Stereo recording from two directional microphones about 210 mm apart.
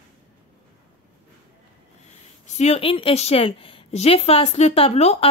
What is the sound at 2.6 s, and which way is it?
Speech, 30° left (ahead or behind).